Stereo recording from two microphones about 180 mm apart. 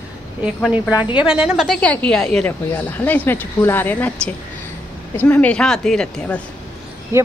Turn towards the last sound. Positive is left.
turn(degrees=-15)  # may be behind; listen again after turning